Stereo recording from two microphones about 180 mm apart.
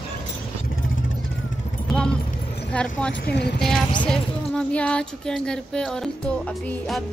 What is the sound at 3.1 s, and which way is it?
Speech, 65° left (ahead or behind).